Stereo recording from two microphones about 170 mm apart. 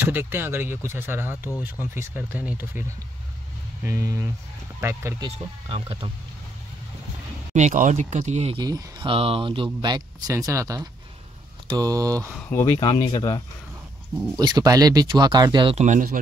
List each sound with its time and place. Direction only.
0.1 s speech: 10° right (ahead or behind)
3.8 s speech: 15° right (ahead or behind)
5.7 s speech: 35° right (ahead or behind)
7.5 s speech: 45° right (ahead or behind)
8.5 s speech: 25° right (ahead or behind)
12.4 s speech: 10° left (ahead or behind)
12.7 s speech: 30° left (ahead or behind)
14.4 s speech: 25° right (ahead or behind)
15.8 s speech: 50° right (ahead or behind)